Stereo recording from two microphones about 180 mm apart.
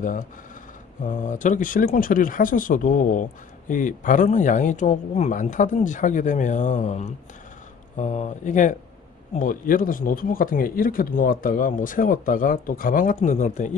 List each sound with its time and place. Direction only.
1.0 s speech: 45° left (ahead or behind)